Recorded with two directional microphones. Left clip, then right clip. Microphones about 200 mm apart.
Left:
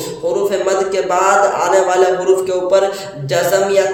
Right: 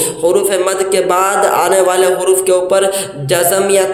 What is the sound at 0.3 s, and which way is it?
A man's voice, 45° right (ahead or behind).